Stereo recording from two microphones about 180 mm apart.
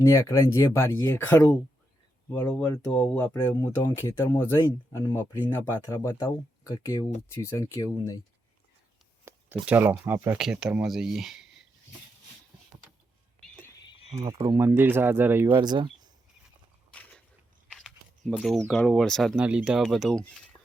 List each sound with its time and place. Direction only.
0.0 s speech: 15° left (ahead or behind)
9.2 s speech: 10° right (ahead or behind)
14.2 s speech: 15° right (ahead or behind)
15.5 s speech: 25° right (ahead or behind)
16.9 s a sound: 5° left (ahead or behind)
18.7 s speech: centre (ahead or behind)